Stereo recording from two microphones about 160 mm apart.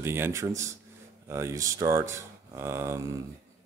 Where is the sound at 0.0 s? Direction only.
15° right (ahead or behind).